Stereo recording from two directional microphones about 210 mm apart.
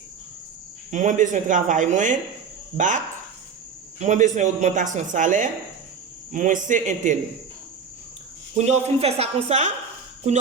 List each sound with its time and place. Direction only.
0.9 s a woman's voice: 35° right (ahead or behind)
4.0 s a woman's voice: 35° right (ahead or behind)
8.5 s a woman's voice: 30° right (ahead or behind)